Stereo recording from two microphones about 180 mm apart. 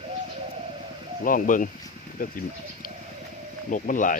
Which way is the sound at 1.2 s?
50° left (ahead or behind).